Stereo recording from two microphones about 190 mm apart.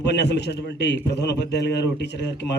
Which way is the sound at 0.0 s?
65° left (ahead or behind).